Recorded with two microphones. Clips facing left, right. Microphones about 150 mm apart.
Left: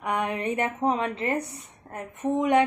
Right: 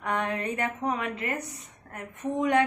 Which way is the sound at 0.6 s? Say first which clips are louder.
Left 4 dB; 25° left (ahead or behind).